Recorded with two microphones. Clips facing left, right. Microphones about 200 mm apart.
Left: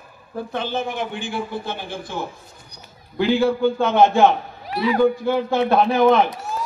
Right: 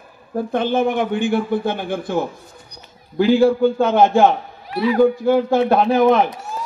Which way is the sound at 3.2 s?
45° right (ahead or behind).